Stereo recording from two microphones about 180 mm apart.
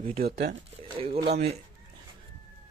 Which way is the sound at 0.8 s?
30° right (ahead or behind).